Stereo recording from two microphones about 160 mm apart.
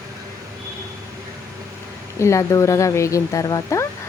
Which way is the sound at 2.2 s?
20° left (ahead or behind).